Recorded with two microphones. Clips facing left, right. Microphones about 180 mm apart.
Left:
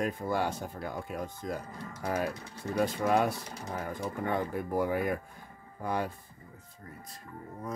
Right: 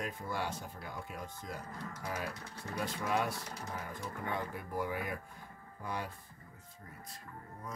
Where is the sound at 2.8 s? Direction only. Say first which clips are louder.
Left 8 dB; 50° left (ahead or behind).